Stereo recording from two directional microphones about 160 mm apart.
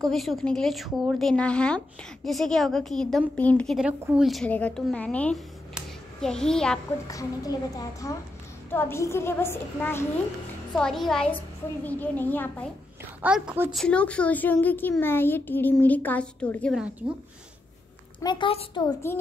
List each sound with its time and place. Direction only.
0.0 s a woman's voice: centre (ahead or behind)
4.0 s a woman's voice: 5° right (ahead or behind)
4.5 s a child's voice: 10° left (ahead or behind)
7.1 s a woman's voice: 20° left (ahead or behind)
10.7 s a child's voice: 5° left (ahead or behind)
13.2 s a woman's voice: 10° right (ahead or behind)
13.8 s a child's voice: 5° left (ahead or behind)
18.2 s a woman's voice: 30° left (ahead or behind)